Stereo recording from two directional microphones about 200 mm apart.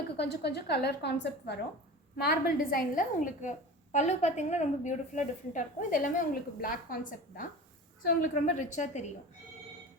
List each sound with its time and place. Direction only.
0.2 s a woman's voice: 55° left (ahead or behind); by 9.1 s 35° left (ahead or behind)